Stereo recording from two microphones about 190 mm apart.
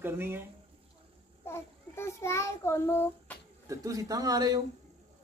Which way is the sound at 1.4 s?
10° left (ahead or behind).